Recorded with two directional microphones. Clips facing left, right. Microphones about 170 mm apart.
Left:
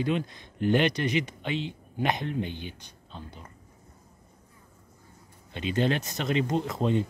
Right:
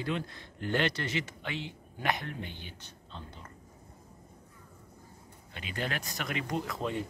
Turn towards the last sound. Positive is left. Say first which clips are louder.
# left 7 dB
turn(degrees=25)  # may be behind; listen again after turning